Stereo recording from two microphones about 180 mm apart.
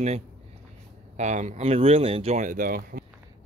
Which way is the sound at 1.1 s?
40° right (ahead or behind).